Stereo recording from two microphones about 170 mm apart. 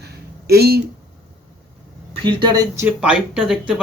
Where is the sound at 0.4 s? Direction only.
70° right (ahead or behind).